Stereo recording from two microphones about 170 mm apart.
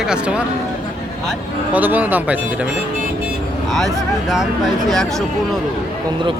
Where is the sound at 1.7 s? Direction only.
10° right (ahead or behind).